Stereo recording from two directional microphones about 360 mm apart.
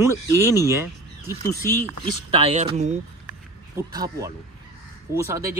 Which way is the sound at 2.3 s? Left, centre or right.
Centre.